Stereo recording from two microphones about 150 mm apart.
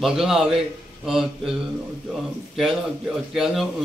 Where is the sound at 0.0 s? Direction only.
5° right (ahead or behind).